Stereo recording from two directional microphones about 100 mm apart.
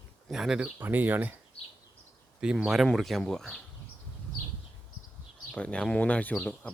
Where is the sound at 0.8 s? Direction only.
20° right (ahead or behind).